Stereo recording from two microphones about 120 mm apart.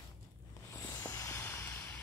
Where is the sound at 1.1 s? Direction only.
25° left (ahead or behind).